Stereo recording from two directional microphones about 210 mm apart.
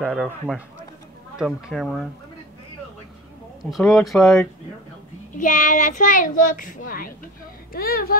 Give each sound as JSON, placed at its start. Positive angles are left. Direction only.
{"t": 0.0, "sound": "speech", "side_deg": -5}
{"t": 3.7, "sound": "speech", "side_deg": 0}
{"t": 5.3, "sound": "a child's voice", "side_deg": 40}